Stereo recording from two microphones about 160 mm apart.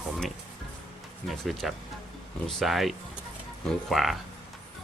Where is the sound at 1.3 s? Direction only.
Centre (ahead or behind).